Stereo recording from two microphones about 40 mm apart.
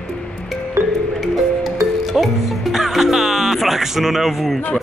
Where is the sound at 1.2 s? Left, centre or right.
Centre.